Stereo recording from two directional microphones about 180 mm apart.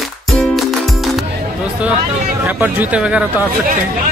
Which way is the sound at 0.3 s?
Centre (ahead or behind).